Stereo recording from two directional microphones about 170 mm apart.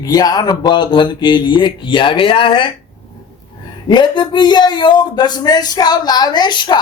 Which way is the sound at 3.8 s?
25° left (ahead or behind).